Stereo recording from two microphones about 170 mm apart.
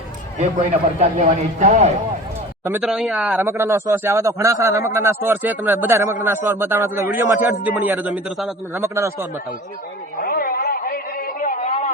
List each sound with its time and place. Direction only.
0.3 s a man's voice: 45° right (ahead or behind)
2.8 s speech: centre (ahead or behind)
3.4 s a man's voice: 15° right (ahead or behind)
8.7 s a man's voice: 15° right (ahead or behind)
10.2 s a sound: 60° left (ahead or behind)